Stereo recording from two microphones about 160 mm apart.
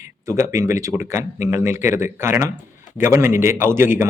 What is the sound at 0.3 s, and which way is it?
Speech, 20° right (ahead or behind).